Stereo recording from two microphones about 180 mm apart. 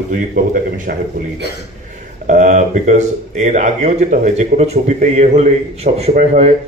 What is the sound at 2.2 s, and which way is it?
A man's voice, 45° right (ahead or behind).